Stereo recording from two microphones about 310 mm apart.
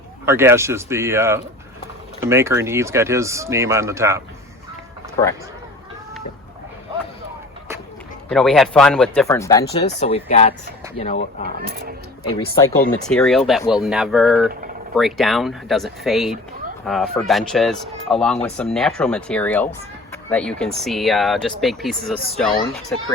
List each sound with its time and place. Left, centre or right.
0.3 s speech: centre
8.3 s speech: centre
11.4 s speech: right
13.1 s speech: centre